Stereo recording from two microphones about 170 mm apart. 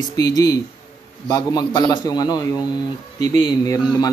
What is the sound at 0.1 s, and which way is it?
Speech, 20° left (ahead or behind).